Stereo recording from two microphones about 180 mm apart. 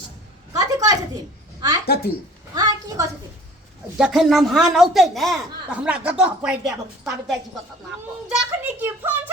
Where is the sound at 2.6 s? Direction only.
20° right (ahead or behind).